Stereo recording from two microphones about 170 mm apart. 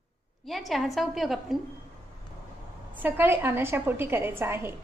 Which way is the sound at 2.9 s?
10° right (ahead or behind).